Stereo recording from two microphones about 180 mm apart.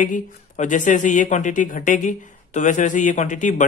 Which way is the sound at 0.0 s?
45° left (ahead or behind).